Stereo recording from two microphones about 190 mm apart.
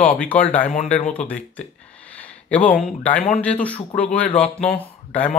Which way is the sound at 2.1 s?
5° left (ahead or behind).